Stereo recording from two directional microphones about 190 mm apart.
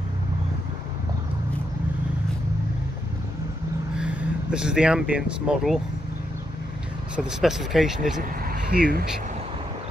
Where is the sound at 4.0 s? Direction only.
5° right (ahead or behind).